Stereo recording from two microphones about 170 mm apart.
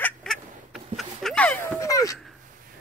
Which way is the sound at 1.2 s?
5° left (ahead or behind).